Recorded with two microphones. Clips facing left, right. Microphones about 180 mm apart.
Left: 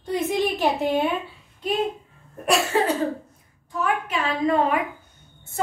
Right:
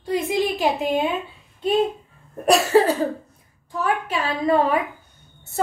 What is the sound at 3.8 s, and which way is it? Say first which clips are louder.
A child's voice: right 1 dB; 30° right (ahead or behind).